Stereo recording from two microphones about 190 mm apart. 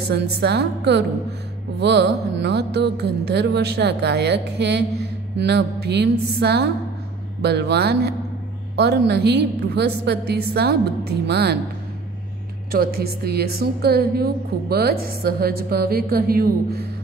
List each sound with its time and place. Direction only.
0.1 s music: 60° right (ahead or behind)
12.7 s a woman's voice: 55° right (ahead or behind)